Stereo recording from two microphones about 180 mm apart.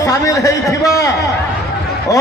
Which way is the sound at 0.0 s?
20° left (ahead or behind).